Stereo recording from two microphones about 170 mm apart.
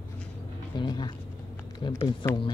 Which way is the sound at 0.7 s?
25° left (ahead or behind).